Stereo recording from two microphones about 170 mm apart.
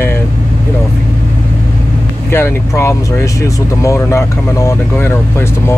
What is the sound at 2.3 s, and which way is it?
Speech, 15° left (ahead or behind).